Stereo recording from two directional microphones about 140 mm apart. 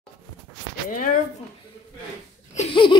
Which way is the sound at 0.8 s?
75° left (ahead or behind).